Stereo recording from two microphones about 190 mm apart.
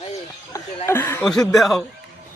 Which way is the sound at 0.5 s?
15° left (ahead or behind).